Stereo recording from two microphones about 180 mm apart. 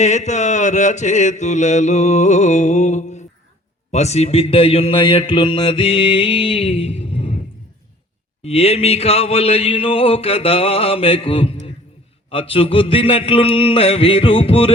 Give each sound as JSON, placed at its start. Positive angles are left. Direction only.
{"t": 0.0, "sound": "speech", "side_deg": 40}
{"t": 8.4, "sound": "speech", "side_deg": 35}